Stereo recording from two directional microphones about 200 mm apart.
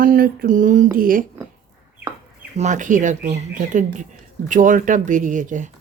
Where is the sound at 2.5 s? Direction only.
35° right (ahead or behind).